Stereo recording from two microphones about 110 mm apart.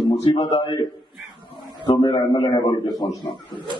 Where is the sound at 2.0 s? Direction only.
40° left (ahead or behind).